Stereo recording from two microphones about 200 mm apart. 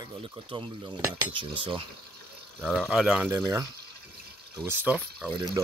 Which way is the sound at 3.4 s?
15° right (ahead or behind).